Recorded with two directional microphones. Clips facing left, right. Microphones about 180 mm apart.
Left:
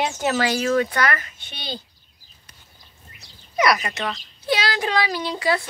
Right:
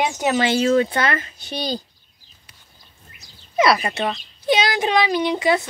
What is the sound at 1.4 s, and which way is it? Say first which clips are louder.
Speech: right 8 dB; 40° right (ahead or behind).